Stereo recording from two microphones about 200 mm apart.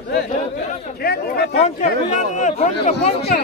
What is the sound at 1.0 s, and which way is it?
Speech, 50° left (ahead or behind).